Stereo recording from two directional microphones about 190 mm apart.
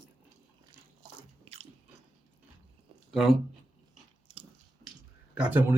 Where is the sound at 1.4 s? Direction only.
30° right (ahead or behind).